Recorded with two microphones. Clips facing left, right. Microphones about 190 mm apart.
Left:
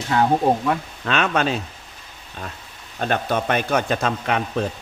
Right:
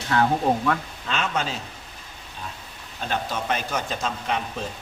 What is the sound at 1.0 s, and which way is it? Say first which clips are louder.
Speech: left 7 dB; 65° left (ahead or behind).